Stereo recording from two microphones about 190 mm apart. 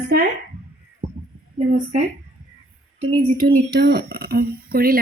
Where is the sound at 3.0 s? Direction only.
40° right (ahead or behind).